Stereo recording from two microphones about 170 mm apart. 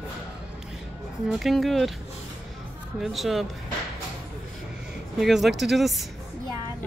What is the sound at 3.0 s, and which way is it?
Speech, centre (ahead or behind).